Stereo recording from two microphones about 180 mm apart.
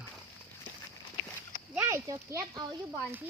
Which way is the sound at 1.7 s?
15° right (ahead or behind).